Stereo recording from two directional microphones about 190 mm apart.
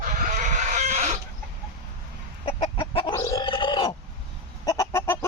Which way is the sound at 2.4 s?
30° left (ahead or behind).